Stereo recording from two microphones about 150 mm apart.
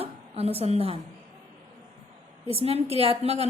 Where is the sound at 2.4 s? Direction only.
40° right (ahead or behind).